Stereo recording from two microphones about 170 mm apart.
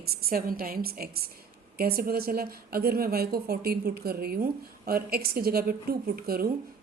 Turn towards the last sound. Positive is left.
turn(degrees=-60)  # may be behind; listen again after turning